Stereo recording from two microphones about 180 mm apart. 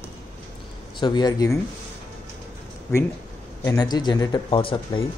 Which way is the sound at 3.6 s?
20° left (ahead or behind).